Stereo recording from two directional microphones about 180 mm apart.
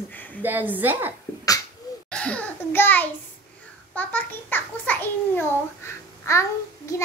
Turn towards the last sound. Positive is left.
turn(degrees=15)  # may be behind; listen again after turning